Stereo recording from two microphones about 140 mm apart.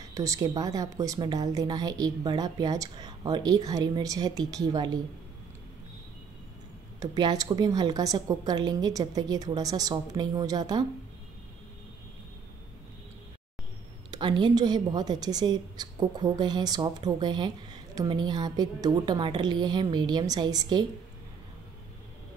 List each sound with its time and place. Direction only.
0.1 s a woman's voice: 25° right (ahead or behind)
7.0 s a woman's voice: 30° right (ahead or behind)
14.1 s a woman's voice: 30° right (ahead or behind)